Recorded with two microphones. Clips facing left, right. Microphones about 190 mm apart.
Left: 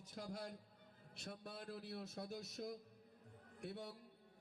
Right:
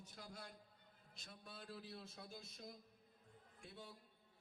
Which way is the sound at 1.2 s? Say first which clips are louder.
Left 7 dB; 65° left (ahead or behind).